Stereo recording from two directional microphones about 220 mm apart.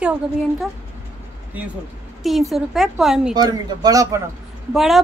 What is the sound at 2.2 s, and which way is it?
A woman's voice, centre (ahead or behind).